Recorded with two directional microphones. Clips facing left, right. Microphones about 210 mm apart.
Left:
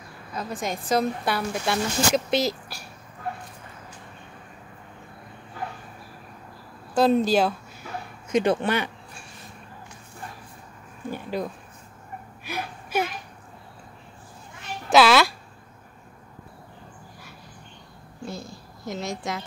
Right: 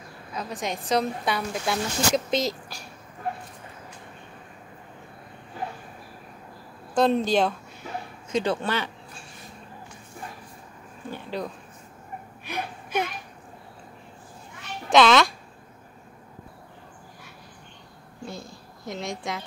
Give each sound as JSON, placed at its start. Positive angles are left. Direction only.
{"t": 0.3, "sound": "speech", "side_deg": 0}
{"t": 6.9, "sound": "speech", "side_deg": 5}
{"t": 8.3, "sound": "speech", "side_deg": 20}
{"t": 11.1, "sound": "a sound", "side_deg": 10}
{"t": 12.4, "sound": "gasp", "side_deg": 5}
{"t": 14.9, "sound": "a child's voice", "side_deg": 5}
{"t": 18.2, "sound": "a sound", "side_deg": 0}